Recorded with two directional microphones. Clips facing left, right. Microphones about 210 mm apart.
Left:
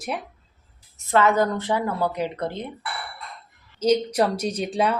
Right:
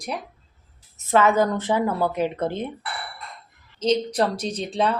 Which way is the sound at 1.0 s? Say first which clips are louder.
Right 1 dB; 20° right (ahead or behind).